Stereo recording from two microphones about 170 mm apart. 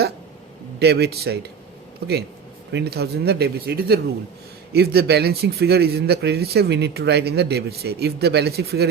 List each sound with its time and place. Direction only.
0.8 s a man's voice: 75° right (ahead or behind)